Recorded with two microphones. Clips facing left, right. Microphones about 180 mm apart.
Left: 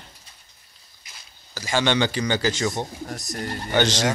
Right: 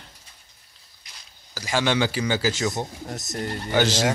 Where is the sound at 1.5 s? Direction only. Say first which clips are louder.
Left 1 dB; centre (ahead or behind).